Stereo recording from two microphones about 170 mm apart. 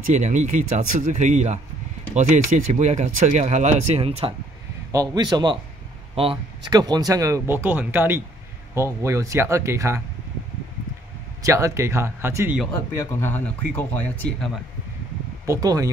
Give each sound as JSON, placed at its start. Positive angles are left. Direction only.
{"t": 0.0, "sound": "speech", "side_deg": -45}
{"t": 4.9, "sound": "speech", "side_deg": -25}
{"t": 11.4, "sound": "speech", "side_deg": -20}
{"t": 12.7, "sound": "speech", "side_deg": 15}
{"t": 15.4, "sound": "speech", "side_deg": -20}